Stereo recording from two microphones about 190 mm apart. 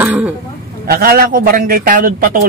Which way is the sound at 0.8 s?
50° right (ahead or behind).